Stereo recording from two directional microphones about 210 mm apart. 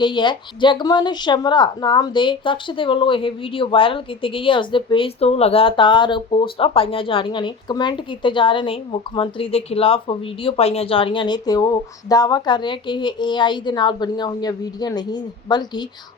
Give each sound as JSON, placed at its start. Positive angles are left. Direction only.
{"t": 0.0, "sound": "speech", "side_deg": 20}